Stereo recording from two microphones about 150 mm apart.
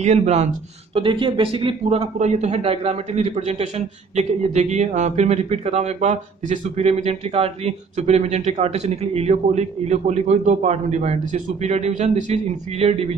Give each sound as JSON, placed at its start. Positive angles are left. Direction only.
{"t": 0.0, "sound": "a man's voice", "side_deg": -45}
{"t": 0.9, "sound": "a man's voice", "side_deg": -35}